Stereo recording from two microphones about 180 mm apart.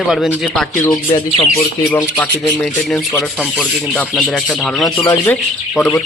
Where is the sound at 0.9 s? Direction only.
25° left (ahead or behind).